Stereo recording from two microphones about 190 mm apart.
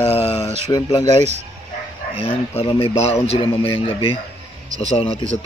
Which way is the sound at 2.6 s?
30° left (ahead or behind).